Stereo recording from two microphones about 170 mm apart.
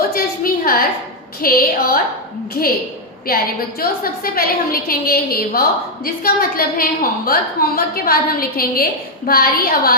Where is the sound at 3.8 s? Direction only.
60° left (ahead or behind).